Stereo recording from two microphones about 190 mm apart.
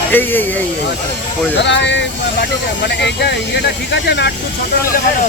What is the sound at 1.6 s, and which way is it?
Speech, 70° left (ahead or behind).